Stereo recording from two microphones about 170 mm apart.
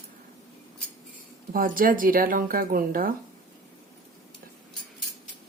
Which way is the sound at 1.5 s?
55° right (ahead or behind).